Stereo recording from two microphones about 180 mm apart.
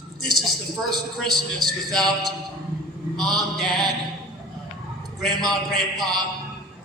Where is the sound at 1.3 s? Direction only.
25° right (ahead or behind).